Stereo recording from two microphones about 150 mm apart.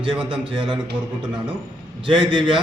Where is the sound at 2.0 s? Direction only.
35° right (ahead or behind).